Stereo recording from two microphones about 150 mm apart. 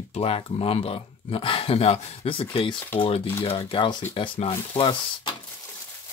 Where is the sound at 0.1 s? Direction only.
40° left (ahead or behind).